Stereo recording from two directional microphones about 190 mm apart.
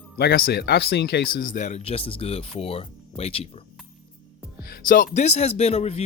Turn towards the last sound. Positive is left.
turn(degrees=30)  # may be behind; listen again after turning